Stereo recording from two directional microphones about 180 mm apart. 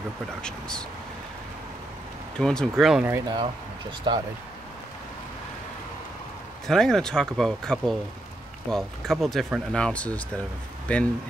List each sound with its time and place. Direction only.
0.4 s speech: 5° left (ahead or behind)
2.3 s speech: 5° left (ahead or behind)
3.1 s speech: 20° right (ahead or behind)
6.7 s speech: centre (ahead or behind)